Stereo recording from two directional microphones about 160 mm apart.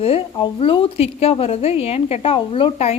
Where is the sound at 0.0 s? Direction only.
35° left (ahead or behind).